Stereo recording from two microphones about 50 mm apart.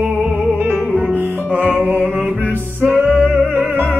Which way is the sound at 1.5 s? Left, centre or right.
Right.